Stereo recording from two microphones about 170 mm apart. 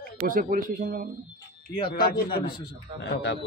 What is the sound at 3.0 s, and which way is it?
Speech, 90° left.